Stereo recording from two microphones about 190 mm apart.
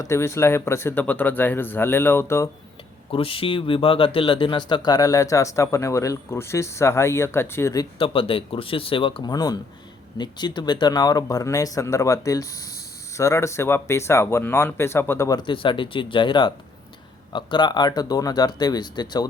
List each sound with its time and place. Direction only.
0.0 s speech: 15° left (ahead or behind)
3.1 s speech: 30° left (ahead or behind)